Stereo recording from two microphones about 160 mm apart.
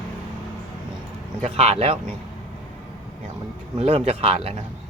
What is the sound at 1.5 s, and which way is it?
Speech, 40° right (ahead or behind).